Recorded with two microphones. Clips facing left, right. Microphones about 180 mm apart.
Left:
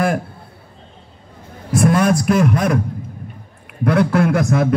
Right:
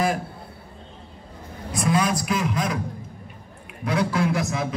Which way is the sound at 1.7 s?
55° left (ahead or behind).